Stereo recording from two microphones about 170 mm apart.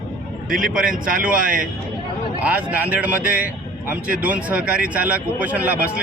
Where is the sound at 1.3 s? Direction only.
55° right (ahead or behind).